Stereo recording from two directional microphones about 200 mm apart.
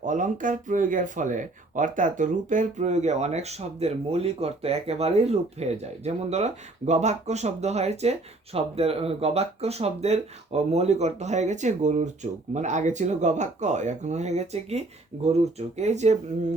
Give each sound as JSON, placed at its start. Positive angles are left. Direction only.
{"t": 0.0, "sound": "speech", "side_deg": -40}